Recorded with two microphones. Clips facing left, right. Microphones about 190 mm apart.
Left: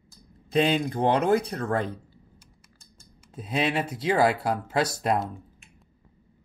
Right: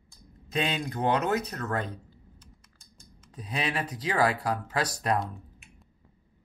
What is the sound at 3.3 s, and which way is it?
Speech, 25° left (ahead or behind).